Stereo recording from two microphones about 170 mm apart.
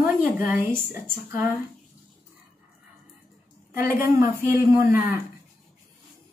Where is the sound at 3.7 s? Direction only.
15° right (ahead or behind).